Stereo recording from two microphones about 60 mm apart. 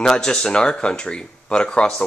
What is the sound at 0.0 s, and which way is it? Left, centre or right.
Speech, centre.